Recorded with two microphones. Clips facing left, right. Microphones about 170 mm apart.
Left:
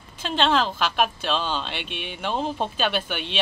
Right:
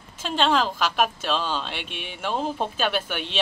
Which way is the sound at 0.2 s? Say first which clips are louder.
Even; 5° right (ahead or behind).